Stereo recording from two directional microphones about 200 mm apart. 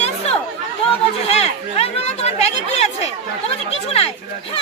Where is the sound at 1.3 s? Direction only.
30° left (ahead or behind).